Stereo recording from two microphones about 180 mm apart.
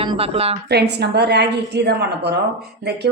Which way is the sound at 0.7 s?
65° right (ahead or behind).